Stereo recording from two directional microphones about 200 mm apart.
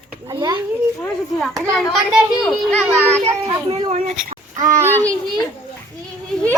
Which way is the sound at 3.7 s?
30° right (ahead or behind).